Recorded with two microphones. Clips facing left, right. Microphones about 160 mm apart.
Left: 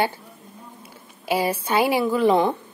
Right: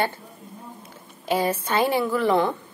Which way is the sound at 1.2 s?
10° left (ahead or behind).